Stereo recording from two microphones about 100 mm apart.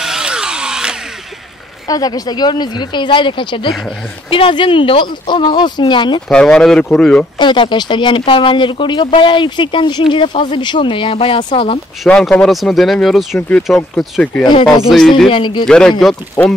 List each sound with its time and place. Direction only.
0.0 s power tool: 5° right (ahead or behind)
1.9 s speech: 40° left (ahead or behind)
6.2 s speech: 5° left (ahead or behind)
7.3 s speech: 55° left (ahead or behind)
12.1 s speech: 10° left (ahead or behind)
14.4 s speech: 50° left (ahead or behind)
15.0 s speech: 5° left (ahead or behind)
15.2 s speech: 55° left (ahead or behind)
15.6 s speech: 10° left (ahead or behind)